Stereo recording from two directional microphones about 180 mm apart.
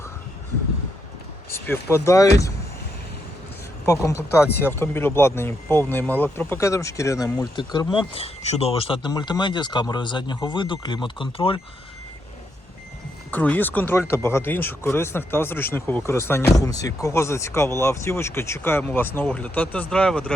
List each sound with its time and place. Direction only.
1.5 s speech: 10° left (ahead or behind)
3.8 s speech: 15° left (ahead or behind)
13.3 s speech: 10° left (ahead or behind)